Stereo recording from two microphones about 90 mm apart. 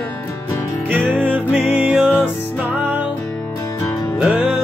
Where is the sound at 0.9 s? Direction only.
20° right (ahead or behind).